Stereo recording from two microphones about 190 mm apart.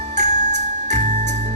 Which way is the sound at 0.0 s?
40° right (ahead or behind).